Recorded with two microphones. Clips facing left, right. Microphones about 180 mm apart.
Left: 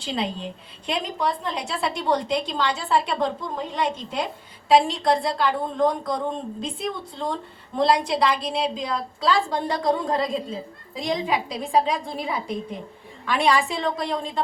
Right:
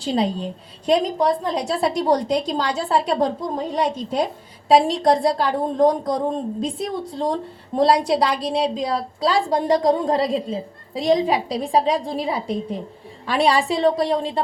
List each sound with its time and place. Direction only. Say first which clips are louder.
0.0 s a woman's voice: right 6 dB; 40° right (ahead or behind)